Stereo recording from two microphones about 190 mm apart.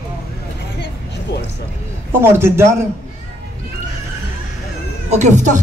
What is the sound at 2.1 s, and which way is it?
Speech, 10° right (ahead or behind).